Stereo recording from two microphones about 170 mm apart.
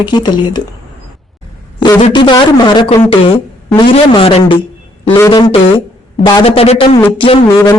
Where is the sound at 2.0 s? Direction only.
30° left (ahead or behind).